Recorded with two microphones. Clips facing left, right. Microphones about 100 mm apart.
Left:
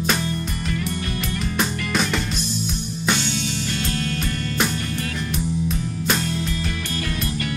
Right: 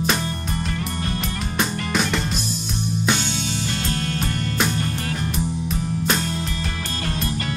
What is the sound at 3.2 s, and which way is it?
Music, 40° right (ahead or behind).